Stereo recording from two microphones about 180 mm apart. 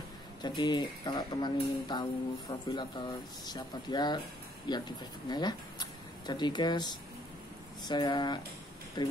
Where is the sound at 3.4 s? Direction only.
25° left (ahead or behind).